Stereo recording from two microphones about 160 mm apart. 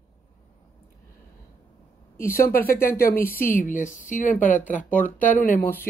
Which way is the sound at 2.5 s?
65° left (ahead or behind).